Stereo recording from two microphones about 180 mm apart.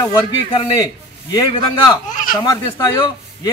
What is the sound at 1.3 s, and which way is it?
Speech, 25° left (ahead or behind).